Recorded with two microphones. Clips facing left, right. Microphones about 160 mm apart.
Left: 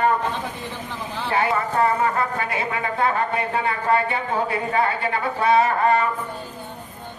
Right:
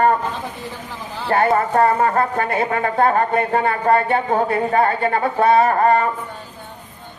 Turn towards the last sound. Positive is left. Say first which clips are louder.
# right 4 dB
turn(degrees=-45)  # may be behind; listen again after turning